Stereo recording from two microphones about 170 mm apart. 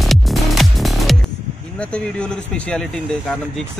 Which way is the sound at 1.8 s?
5° left (ahead or behind).